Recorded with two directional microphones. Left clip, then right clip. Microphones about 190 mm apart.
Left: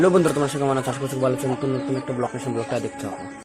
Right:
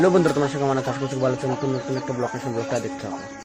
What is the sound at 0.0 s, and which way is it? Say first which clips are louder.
Speech: even; 10° left (ahead or behind).